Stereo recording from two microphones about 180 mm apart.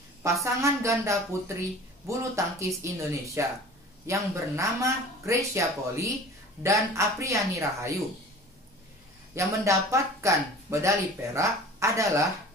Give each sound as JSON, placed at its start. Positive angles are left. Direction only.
{"t": 0.2, "sound": "speech", "side_deg": -15}
{"t": 9.3, "sound": "speech", "side_deg": -15}